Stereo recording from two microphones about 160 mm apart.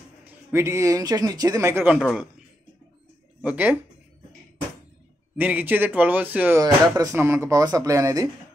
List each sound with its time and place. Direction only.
0.2 s speech: 10° right (ahead or behind)
3.4 s speech: 10° right (ahead or behind)
5.4 s speech: 10° right (ahead or behind)